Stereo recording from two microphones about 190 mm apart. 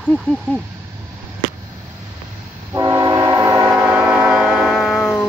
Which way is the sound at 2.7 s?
20° right (ahead or behind).